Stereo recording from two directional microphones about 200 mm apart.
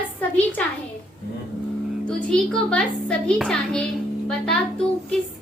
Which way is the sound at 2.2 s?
5° left (ahead or behind).